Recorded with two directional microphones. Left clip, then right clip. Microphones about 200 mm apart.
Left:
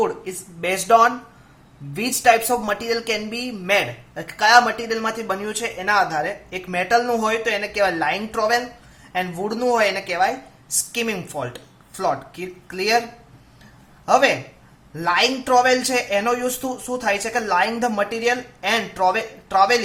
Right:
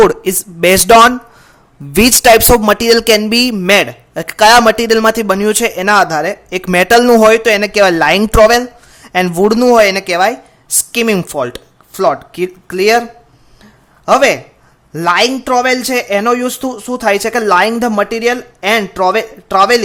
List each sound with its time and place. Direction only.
0.1 s a man's voice: 55° right (ahead or behind)
2.6 s speech: 50° right (ahead or behind)
14.0 s a man's voice: 50° right (ahead or behind)